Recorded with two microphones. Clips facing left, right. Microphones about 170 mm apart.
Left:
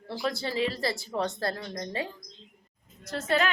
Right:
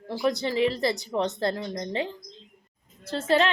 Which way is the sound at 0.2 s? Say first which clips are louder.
Right 5 dB; 20° right (ahead or behind).